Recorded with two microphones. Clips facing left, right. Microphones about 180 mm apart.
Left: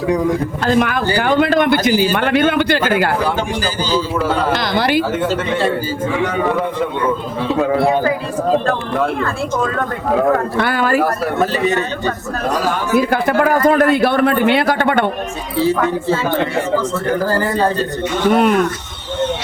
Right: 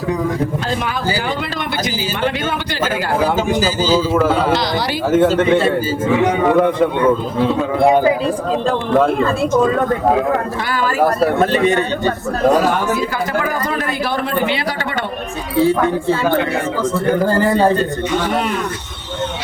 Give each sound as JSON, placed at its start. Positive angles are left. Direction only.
{"t": 0.7, "sound": "speech", "side_deg": 55}
{"t": 4.5, "sound": "speech", "side_deg": 60}
{"t": 10.6, "sound": "speech", "side_deg": 60}
{"t": 12.9, "sound": "speech", "side_deg": 60}
{"t": 15.5, "sound": "speech", "side_deg": 0}